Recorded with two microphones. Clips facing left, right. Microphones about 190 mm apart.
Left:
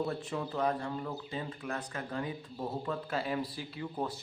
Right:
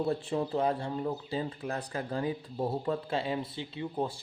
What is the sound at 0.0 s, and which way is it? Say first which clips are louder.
Speech: right 4 dB; 30° right (ahead or behind).